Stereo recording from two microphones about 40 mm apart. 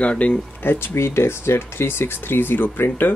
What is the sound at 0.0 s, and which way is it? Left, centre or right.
Speech, left.